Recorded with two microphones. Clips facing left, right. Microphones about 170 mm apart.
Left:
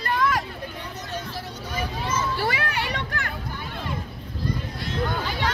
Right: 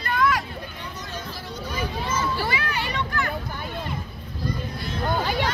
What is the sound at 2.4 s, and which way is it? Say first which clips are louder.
Children playing: left 1 dB; 65° left (ahead or behind).